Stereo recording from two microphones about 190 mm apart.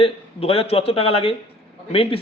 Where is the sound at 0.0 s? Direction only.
30° left (ahead or behind).